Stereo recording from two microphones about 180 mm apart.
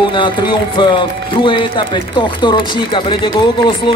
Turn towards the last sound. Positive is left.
turn(degrees=25)  # may be behind; listen again after turning